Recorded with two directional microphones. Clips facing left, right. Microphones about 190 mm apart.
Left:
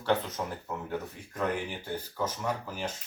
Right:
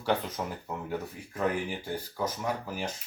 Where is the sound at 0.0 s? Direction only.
10° right (ahead or behind).